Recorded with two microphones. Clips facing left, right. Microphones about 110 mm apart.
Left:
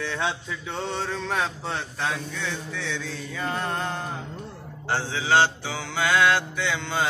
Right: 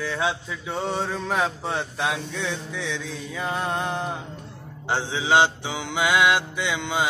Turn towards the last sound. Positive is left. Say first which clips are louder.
# right 1 dB
turn(degrees=-15)  # may be behind; listen again after turning